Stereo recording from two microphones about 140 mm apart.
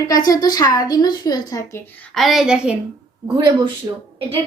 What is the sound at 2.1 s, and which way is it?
Speech, centre (ahead or behind).